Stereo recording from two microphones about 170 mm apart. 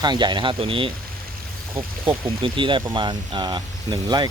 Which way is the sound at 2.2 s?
30° right (ahead or behind).